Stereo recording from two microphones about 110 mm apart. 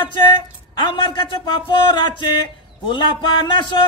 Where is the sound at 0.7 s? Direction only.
50° left (ahead or behind).